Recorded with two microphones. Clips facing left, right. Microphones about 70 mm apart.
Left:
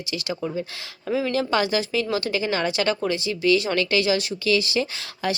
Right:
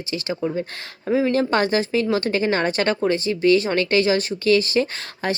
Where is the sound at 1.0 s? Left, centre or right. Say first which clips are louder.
Right 4 dB; right.